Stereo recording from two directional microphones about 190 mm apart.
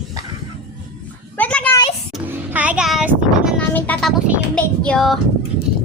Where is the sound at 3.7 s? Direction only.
10° left (ahead or behind).